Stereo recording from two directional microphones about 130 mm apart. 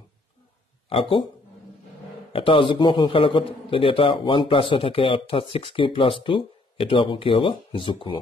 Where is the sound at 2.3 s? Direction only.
40° left (ahead or behind).